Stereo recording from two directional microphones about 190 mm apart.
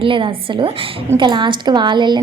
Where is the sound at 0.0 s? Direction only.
25° right (ahead or behind).